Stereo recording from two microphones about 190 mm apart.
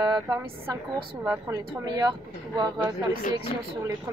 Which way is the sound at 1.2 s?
15° right (ahead or behind).